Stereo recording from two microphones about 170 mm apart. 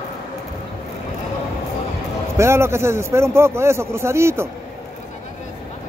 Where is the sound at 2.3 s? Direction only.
15° right (ahead or behind).